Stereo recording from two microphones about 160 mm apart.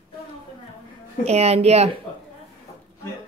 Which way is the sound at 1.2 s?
40° right (ahead or behind).